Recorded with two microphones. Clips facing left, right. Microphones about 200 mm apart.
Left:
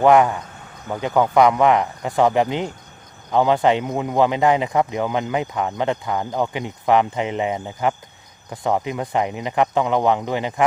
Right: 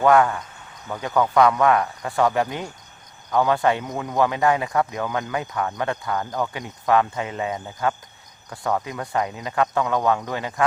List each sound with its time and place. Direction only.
0.0 s speech: 20° left (ahead or behind)